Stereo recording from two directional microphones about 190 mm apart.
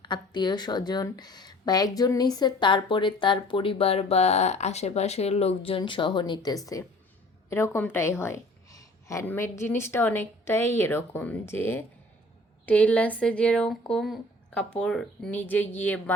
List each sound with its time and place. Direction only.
0.0 s a woman's voice: 25° left (ahead or behind)